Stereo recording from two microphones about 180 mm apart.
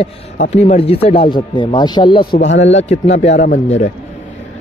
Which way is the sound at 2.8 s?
40° left (ahead or behind).